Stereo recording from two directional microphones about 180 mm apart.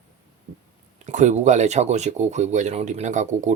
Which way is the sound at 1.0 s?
45° right (ahead or behind).